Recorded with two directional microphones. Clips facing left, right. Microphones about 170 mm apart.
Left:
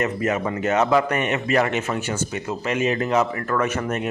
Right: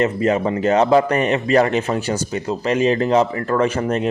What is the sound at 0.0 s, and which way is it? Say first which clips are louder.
A man's voice: right 5 dB; 30° right (ahead or behind).